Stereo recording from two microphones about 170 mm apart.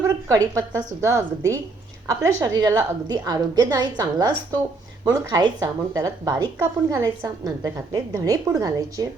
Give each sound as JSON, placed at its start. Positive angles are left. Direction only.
{"t": 0.0, "sound": "a woman's voice", "side_deg": -20}
{"t": 6.6, "sound": "a woman's voice", "side_deg": -15}